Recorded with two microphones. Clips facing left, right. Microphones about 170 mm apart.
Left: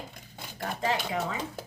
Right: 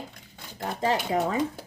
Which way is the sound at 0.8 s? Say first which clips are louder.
Right 5 dB; 40° right (ahead or behind).